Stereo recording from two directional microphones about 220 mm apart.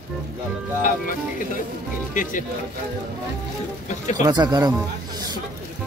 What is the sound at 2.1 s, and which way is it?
Speech, 35° left (ahead or behind).